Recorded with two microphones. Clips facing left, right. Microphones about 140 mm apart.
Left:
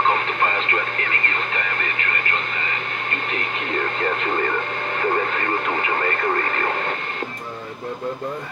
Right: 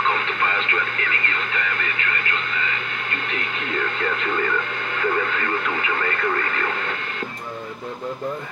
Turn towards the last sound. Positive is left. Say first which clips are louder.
# left 2 dB
turn(degrees=40)  # may be behind; listen again after turning